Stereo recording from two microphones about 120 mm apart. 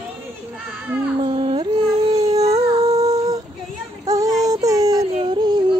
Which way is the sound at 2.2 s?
30° right (ahead or behind).